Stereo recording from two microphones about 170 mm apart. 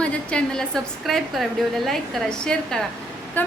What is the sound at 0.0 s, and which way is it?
A woman's voice, 5° left (ahead or behind).